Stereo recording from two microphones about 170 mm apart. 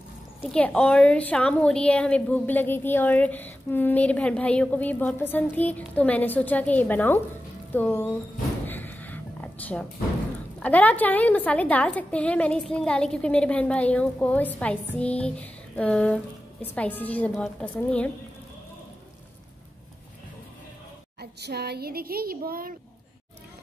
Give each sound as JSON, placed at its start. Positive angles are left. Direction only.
{"t": 0.4, "sound": "a woman's voice", "side_deg": 10}
{"t": 8.6, "sound": "a sound", "side_deg": 10}
{"t": 10.6, "sound": "a woman's voice", "side_deg": 10}
{"t": 21.2, "sound": "speech", "side_deg": -75}